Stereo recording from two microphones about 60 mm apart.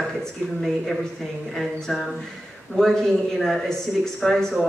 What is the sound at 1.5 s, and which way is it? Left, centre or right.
Speech, centre.